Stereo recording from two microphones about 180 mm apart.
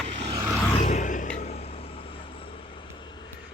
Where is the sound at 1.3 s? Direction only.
35° left (ahead or behind).